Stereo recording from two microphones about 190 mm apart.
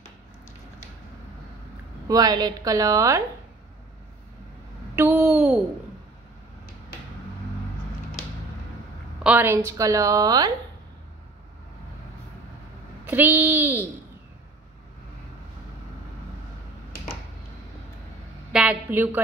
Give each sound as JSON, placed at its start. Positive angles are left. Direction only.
{"t": 2.0, "sound": "a woman's voice", "side_deg": -20}
{"t": 4.9, "sound": "a sound", "side_deg": -10}
{"t": 9.2, "sound": "a woman's voice", "side_deg": -10}
{"t": 13.0, "sound": "a woman's voice", "side_deg": -10}
{"t": 18.5, "sound": "a woman's voice", "side_deg": -5}